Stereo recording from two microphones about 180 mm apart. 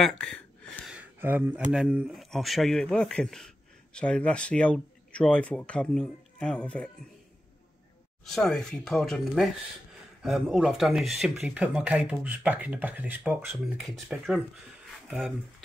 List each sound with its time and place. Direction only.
0.0 s speech: 5° left (ahead or behind)
0.8 s a sound: 10° right (ahead or behind)
1.7 s speech: 5° right (ahead or behind)
8.4 s speech: 5° left (ahead or behind)